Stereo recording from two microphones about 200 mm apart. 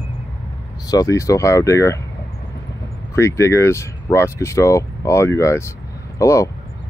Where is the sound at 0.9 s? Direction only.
15° left (ahead or behind).